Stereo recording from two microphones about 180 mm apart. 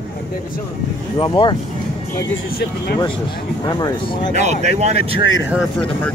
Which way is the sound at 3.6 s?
20° left (ahead or behind).